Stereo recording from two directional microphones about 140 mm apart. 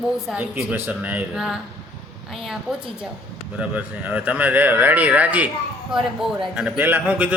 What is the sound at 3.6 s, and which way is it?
Speech, 10° right (ahead or behind).